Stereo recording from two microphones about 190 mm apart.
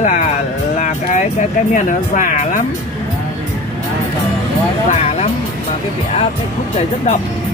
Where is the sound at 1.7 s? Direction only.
40° left (ahead or behind).